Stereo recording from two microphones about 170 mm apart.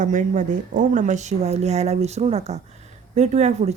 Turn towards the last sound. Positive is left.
turn(degrees=-40)  # may be behind; listen again after turning